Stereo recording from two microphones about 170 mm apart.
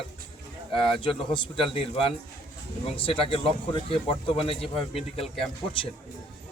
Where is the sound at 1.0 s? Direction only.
30° left (ahead or behind).